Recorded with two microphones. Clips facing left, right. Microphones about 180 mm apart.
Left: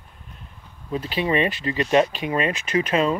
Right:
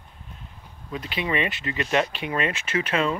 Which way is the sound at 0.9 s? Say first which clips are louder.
Left 5 dB; 35° left (ahead or behind).